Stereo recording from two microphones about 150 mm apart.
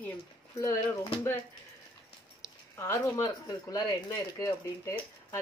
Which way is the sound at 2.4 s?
20° left (ahead or behind).